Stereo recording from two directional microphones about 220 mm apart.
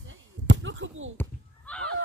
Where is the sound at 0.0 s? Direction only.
55° right (ahead or behind).